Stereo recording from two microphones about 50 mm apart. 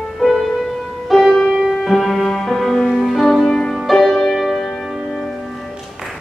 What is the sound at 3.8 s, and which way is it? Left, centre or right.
Music, centre.